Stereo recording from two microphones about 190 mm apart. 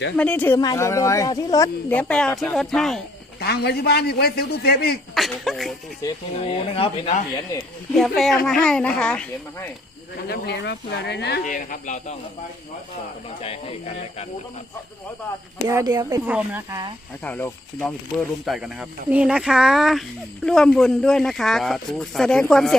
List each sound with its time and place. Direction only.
0.2 s speech: 10° left (ahead or behind)
3.4 s a man's voice: 60° left (ahead or behind)
5.1 s a sound: centre (ahead or behind)
6.4 s speech: 30° left (ahead or behind)
7.9 s speech: centre (ahead or behind)
10.2 s a man's voice: 60° left (ahead or behind)
11.4 s speech: 40° left (ahead or behind)
13.4 s speech: 30° left (ahead or behind)
15.6 s speech: 20° right (ahead or behind)
16.3 s speech: 10° right (ahead or behind)
17.2 s speech: 10° left (ahead or behind)